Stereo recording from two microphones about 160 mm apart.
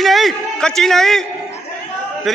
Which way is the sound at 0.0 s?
Centre (ahead or behind).